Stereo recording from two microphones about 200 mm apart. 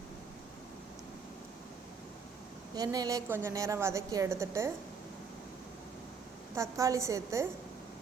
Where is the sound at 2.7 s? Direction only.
20° right (ahead or behind).